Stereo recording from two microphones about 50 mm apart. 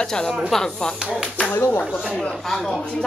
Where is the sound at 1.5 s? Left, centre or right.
Left.